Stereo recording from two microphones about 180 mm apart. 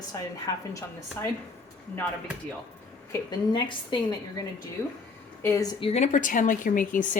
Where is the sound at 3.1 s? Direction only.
25° left (ahead or behind).